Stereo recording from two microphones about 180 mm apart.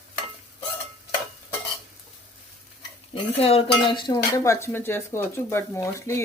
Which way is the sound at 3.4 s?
30° left (ahead or behind).